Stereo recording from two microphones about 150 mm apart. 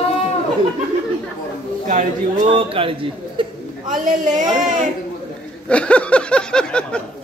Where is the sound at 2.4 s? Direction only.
40° right (ahead or behind).